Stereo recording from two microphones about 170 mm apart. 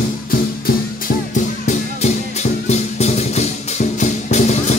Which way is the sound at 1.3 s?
45° left (ahead or behind).